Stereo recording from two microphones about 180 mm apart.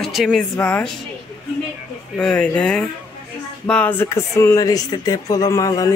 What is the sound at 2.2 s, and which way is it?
Speech, 5° left (ahead or behind).